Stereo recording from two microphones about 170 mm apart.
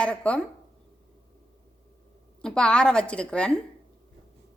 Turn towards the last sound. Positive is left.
turn(degrees=5)  # may be behind; listen again after turning